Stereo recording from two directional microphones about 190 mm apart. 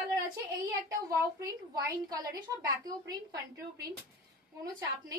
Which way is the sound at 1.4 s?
20° right (ahead or behind).